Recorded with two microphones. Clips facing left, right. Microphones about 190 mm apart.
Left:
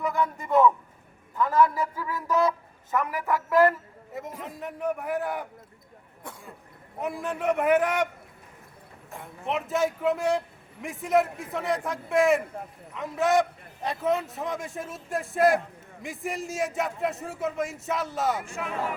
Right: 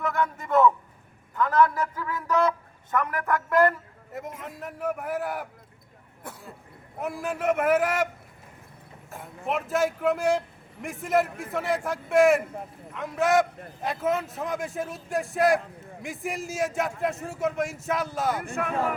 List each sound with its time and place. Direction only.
0.0 s a man's voice: centre (ahead or behind)
7.0 s a man's voice: centre (ahead or behind)
9.0 s a man's voice: centre (ahead or behind)
18.4 s speech: 55° right (ahead or behind)